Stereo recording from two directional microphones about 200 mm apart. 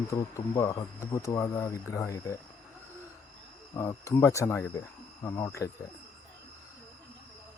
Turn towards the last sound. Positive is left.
turn(degrees=15)  # may be behind; listen again after turning